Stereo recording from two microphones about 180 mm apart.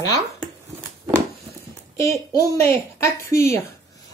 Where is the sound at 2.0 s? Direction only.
15° left (ahead or behind).